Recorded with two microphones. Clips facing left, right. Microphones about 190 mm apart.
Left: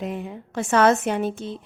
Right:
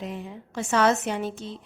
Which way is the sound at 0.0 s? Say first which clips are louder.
Left 5 dB; 55° left (ahead or behind).